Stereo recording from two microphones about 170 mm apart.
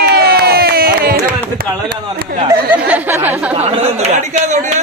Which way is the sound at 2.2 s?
60° right (ahead or behind).